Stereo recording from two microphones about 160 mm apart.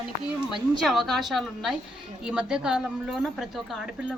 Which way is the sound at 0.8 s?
Centre (ahead or behind).